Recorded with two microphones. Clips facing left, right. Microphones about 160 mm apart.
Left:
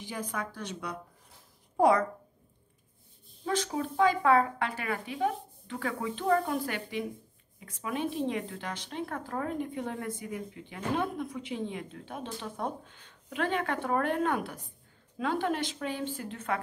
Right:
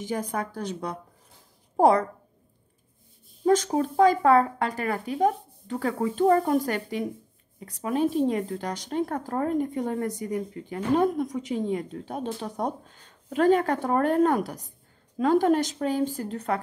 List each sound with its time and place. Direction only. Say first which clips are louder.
0.0 s speech: right 7 dB; 40° right (ahead or behind)
3.4 s speech: right 9 dB; 45° right (ahead or behind)